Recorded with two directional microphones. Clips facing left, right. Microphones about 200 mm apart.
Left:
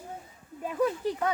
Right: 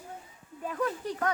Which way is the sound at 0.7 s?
10° left (ahead or behind).